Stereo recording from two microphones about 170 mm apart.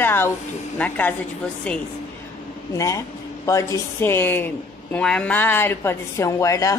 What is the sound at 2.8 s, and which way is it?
A woman's voice, 20° left (ahead or behind).